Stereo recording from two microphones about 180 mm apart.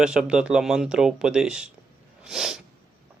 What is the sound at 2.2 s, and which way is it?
Sneeze, 5° right (ahead or behind).